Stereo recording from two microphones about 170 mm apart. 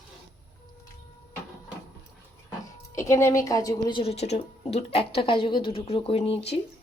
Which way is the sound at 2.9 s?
15° left (ahead or behind).